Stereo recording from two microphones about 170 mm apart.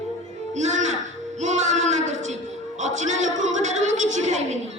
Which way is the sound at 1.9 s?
45° right (ahead or behind).